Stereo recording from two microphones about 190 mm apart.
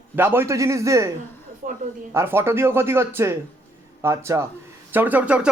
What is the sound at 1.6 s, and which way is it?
Speech, 40° right (ahead or behind).